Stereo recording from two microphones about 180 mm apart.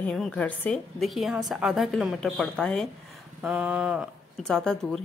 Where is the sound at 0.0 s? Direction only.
5° left (ahead or behind).